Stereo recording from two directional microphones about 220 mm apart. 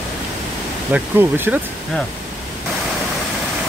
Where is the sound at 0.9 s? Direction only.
10° right (ahead or behind).